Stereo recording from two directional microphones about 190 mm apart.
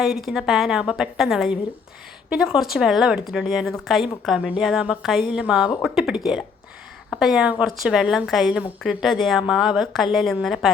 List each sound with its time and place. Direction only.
0.0 s a woman's voice: centre (ahead or behind)